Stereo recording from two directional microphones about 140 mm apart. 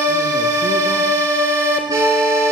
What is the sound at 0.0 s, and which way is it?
Music, 20° right (ahead or behind).